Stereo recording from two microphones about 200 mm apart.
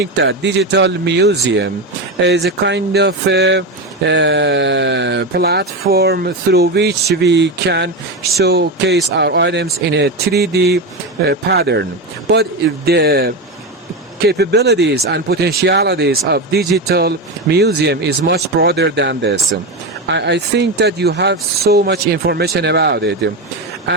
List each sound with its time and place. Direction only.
0.0 s a man's voice: 60° right (ahead or behind)